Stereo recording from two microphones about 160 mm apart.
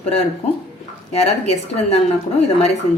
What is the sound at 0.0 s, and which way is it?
A woman's voice, 40° left (ahead or behind).